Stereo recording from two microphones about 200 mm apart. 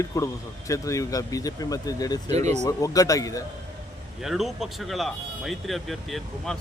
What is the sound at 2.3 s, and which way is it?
Speech, 35° right (ahead or behind).